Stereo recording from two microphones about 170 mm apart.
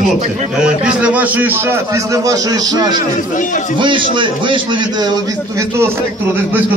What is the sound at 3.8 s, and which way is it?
A man's voice, 30° right (ahead or behind).